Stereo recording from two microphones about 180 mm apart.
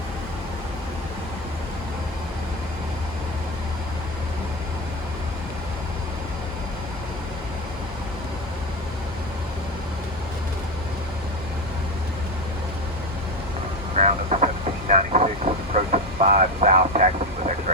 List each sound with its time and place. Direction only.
13.9 s vehicle: 40° right (ahead or behind)